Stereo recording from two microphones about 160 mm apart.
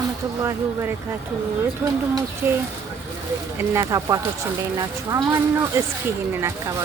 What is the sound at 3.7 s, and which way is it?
Speech, 20° right (ahead or behind).